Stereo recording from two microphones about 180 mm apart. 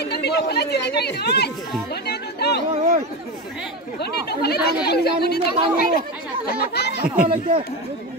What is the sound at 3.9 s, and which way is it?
Speech, 65° left (ahead or behind).